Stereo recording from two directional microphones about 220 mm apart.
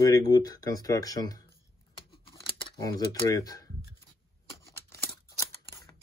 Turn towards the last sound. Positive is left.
turn(degrees=15)  # may be behind; listen again after turning